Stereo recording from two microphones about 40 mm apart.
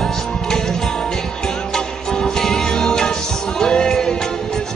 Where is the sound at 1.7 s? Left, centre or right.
Centre.